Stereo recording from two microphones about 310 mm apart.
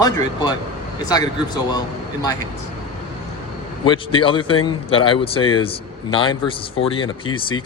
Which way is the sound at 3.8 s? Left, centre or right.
Centre.